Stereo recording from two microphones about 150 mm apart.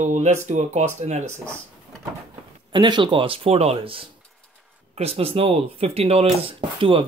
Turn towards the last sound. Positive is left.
turn(degrees=-35)  # may be behind; listen again after turning